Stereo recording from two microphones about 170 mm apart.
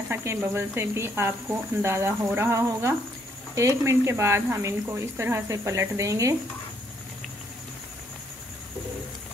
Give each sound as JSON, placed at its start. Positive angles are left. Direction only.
{"t": 0.1, "sound": "speech", "side_deg": -15}